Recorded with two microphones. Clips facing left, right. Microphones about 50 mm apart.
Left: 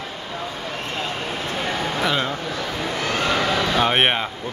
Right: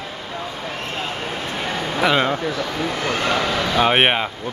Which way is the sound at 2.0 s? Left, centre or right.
Right.